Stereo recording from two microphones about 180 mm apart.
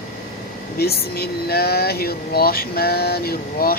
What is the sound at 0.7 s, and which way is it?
Speech, 60° left (ahead or behind).